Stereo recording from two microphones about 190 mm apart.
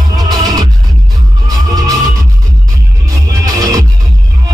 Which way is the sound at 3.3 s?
15° right (ahead or behind).